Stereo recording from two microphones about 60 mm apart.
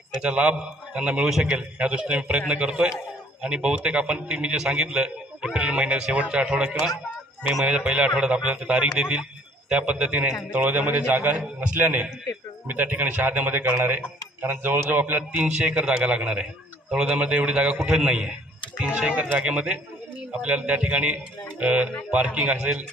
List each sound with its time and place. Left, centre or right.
0.2 s a man's voice: centre